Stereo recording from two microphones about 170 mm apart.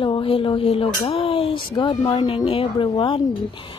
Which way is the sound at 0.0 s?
30° left (ahead or behind).